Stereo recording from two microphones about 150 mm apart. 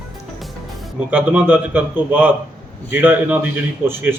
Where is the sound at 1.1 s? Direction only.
10° right (ahead or behind).